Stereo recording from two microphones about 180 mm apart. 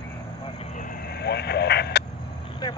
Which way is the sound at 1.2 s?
65° left (ahead or behind).